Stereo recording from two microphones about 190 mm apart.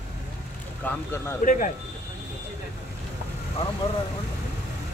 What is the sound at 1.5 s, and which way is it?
Speech, 45° left (ahead or behind).